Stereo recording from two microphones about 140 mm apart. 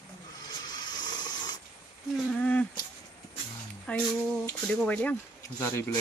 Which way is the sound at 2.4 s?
10° left (ahead or behind).